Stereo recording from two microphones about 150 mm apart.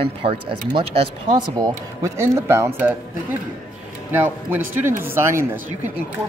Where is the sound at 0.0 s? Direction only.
40° right (ahead or behind); by 3.0 s 15° right (ahead or behind).